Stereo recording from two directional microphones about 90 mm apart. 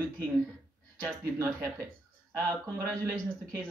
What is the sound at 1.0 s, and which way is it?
Speech, 30° right (ahead or behind).